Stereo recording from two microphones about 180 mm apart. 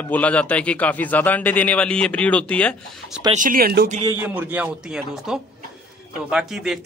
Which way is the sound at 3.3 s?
50° right (ahead or behind).